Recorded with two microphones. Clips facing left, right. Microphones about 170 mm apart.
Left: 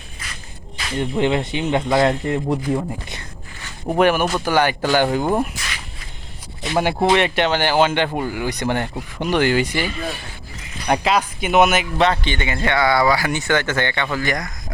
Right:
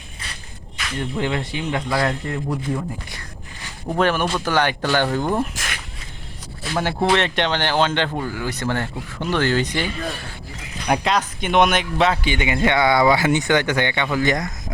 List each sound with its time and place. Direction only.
0.8 s speech: 25° left (ahead or behind)
5.5 s a sound: 50° right (ahead or behind)
6.6 s a man's voice: 15° left (ahead or behind); by 14.5 s 20° right (ahead or behind)